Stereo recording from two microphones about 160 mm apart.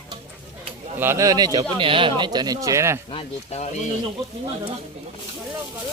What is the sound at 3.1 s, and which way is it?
Speech, 40° left (ahead or behind).